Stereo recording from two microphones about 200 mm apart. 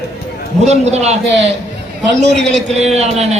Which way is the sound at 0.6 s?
35° right (ahead or behind).